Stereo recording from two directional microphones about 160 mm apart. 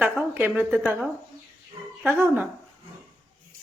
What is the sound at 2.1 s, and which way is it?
Speech, 15° right (ahead or behind).